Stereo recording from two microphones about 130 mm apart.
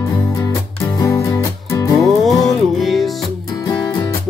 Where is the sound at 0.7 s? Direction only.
25° left (ahead or behind).